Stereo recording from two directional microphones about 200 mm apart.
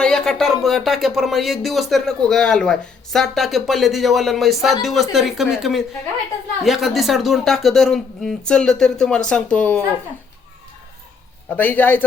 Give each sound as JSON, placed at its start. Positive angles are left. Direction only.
{"t": 0.0, "sound": "speech", "side_deg": 0}
{"t": 11.4, "sound": "a man's voice", "side_deg": 10}